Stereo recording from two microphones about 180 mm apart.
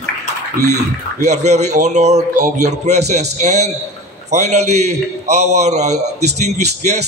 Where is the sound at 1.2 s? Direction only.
40° right (ahead or behind).